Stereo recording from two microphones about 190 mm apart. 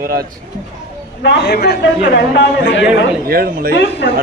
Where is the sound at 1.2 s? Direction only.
65° left (ahead or behind).